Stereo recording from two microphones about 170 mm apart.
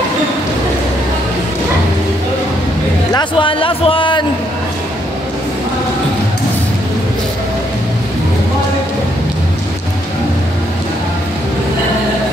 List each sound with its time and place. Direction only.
3.1 s a man's voice: 25° left (ahead or behind)